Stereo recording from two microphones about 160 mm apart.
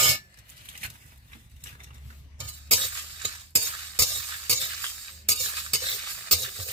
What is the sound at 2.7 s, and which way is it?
Stir, 35° right (ahead or behind).